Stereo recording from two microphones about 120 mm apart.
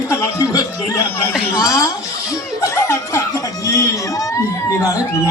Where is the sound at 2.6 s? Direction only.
25° left (ahead or behind).